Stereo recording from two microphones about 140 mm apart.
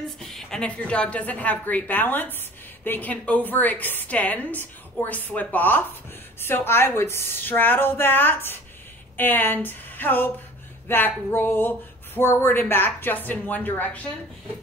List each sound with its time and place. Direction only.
0.0 s a woman's voice: 5° left (ahead or behind)